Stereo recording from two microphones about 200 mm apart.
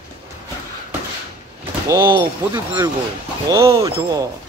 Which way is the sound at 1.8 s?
15° right (ahead or behind).